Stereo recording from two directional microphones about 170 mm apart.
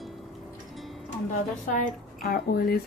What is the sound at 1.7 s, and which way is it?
Speech, 45° left (ahead or behind).